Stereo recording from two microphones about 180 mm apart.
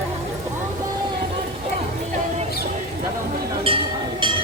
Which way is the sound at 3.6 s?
30° right (ahead or behind).